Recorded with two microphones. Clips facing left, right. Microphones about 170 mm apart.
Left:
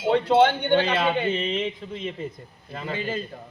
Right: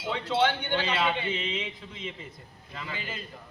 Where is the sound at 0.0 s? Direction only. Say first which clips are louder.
Left 8 dB; 55° left (ahead or behind).